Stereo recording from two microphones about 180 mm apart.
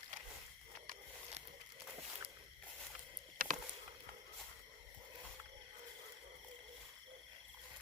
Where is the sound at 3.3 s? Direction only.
45° right (ahead or behind).